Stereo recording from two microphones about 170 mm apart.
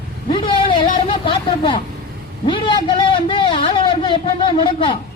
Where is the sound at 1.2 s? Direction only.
30° left (ahead or behind).